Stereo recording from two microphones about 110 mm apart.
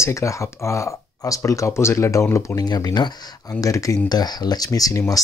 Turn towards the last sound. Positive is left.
turn(degrees=30)  # may be behind; listen again after turning